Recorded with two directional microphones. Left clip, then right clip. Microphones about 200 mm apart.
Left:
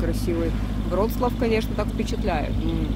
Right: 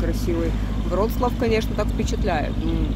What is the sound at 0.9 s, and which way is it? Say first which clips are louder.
Speech: right 1 dB; centre (ahead or behind).